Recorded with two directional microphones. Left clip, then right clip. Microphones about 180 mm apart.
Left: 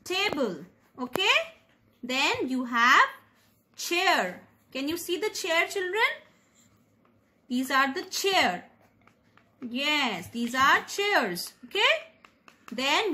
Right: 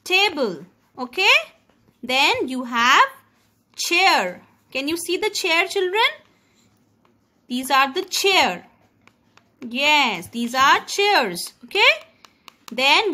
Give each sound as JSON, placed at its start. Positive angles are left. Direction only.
{"t": 0.0, "sound": "a woman's voice", "side_deg": -55}
{"t": 7.4, "sound": "a woman's voice", "side_deg": -60}
{"t": 9.7, "sound": "a woman's voice", "side_deg": -60}